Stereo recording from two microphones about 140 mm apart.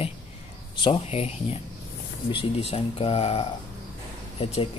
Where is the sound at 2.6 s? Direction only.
45° left (ahead or behind).